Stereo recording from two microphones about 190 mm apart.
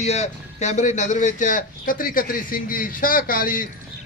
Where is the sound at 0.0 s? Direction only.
35° left (ahead or behind).